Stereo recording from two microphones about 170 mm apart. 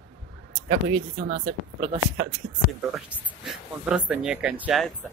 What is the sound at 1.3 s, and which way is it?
Speech, 45° right (ahead or behind).